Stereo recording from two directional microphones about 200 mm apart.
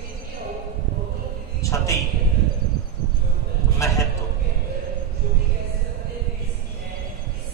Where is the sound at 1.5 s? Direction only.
15° left (ahead or behind).